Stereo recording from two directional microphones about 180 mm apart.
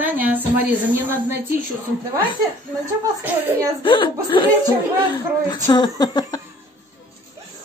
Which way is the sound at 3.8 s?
25° left (ahead or behind).